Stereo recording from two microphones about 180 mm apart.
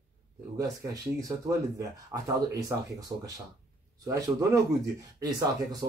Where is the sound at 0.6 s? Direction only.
20° right (ahead or behind).